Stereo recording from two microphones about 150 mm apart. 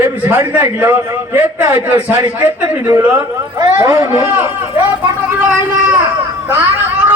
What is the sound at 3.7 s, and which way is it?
Speech, 20° right (ahead or behind).